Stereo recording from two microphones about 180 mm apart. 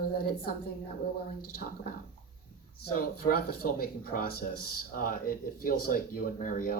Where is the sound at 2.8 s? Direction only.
60° left (ahead or behind).